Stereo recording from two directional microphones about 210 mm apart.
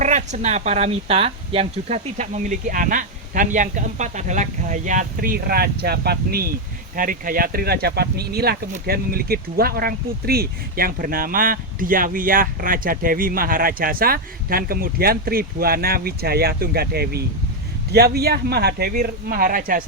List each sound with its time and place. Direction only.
0.0 s speech: 35° right (ahead or behind)